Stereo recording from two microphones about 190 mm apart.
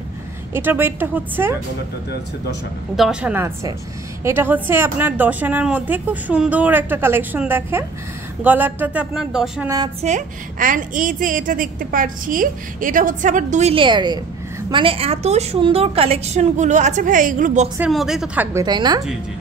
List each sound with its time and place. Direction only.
0.5 s a woman's voice: 10° right (ahead or behind)
3.0 s a woman's voice: 5° right (ahead or behind)
10.0 s a woman's voice: 45° right (ahead or behind)
17.7 s a woman's voice: 5° right (ahead or behind); by 19.0 s 20° right (ahead or behind)